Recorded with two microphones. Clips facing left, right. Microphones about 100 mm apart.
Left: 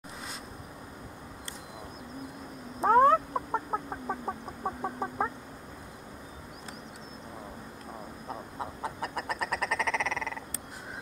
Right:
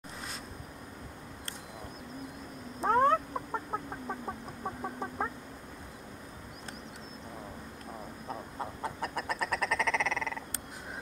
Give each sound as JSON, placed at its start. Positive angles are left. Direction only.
{"t": 2.8, "sound": "cat", "side_deg": 5}
{"t": 3.3, "sound": "chicken", "side_deg": 20}
{"t": 8.3, "sound": "frog", "side_deg": 0}